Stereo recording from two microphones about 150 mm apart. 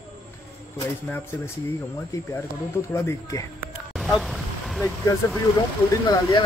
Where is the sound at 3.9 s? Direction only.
Centre (ahead or behind).